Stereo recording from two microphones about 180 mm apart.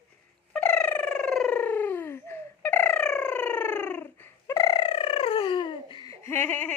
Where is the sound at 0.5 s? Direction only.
5° left (ahead or behind).